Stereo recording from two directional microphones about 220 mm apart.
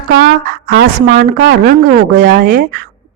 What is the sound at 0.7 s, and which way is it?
A woman's voice, 45° right (ahead or behind).